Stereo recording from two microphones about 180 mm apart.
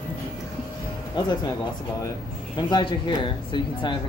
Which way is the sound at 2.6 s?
25° left (ahead or behind).